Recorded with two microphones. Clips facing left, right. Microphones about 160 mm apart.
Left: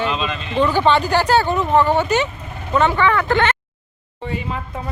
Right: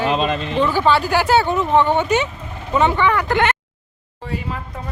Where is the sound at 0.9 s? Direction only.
5° right (ahead or behind).